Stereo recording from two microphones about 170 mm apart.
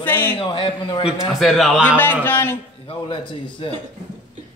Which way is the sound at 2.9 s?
30° left (ahead or behind).